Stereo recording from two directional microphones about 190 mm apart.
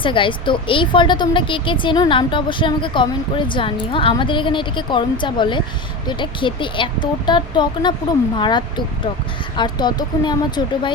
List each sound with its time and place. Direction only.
0.0 s a woman's voice: 25° left (ahead or behind)